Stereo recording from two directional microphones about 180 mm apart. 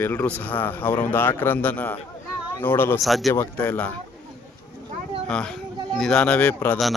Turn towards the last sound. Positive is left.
turn(degrees=5)  # may be behind; listen again after turning